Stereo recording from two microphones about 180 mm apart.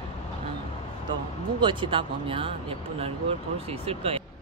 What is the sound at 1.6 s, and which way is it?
Speech, 25° right (ahead or behind).